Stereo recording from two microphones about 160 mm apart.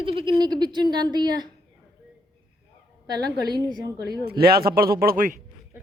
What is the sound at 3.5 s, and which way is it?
Speech, 25° right (ahead or behind).